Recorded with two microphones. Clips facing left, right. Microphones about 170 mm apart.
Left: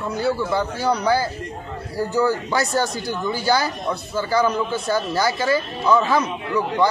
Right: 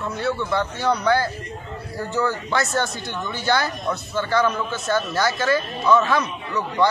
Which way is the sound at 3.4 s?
5° left (ahead or behind).